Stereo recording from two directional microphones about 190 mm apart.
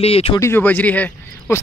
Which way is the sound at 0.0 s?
30° left (ahead or behind).